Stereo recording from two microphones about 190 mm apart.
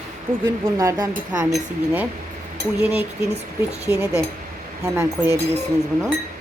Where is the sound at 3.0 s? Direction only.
35° right (ahead or behind).